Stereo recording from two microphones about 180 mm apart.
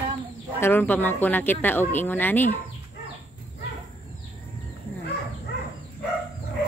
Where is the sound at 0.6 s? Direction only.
10° left (ahead or behind).